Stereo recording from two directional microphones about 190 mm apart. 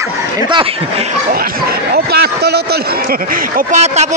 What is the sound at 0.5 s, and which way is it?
Speech, 30° right (ahead or behind).